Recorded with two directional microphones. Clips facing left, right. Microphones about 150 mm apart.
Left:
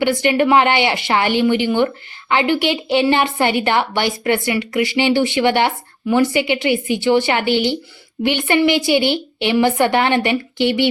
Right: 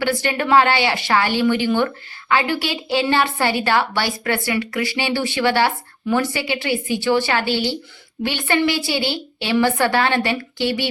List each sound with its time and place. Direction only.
0.0 s a woman's voice: 15° left (ahead or behind)